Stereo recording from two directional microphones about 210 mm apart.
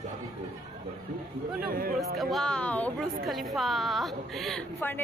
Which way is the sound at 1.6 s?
45° right (ahead or behind).